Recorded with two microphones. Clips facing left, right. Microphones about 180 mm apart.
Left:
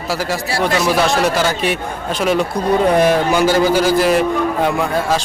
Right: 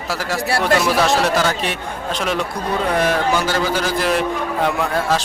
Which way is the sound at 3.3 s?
10° left (ahead or behind).